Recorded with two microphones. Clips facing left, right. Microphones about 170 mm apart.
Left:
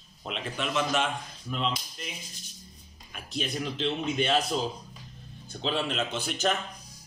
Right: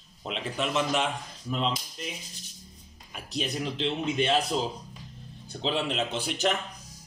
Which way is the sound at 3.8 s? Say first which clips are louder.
Right 1 dB; 25° right (ahead or behind).